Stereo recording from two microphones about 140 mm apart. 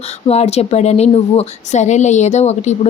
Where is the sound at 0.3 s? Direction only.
50° left (ahead or behind).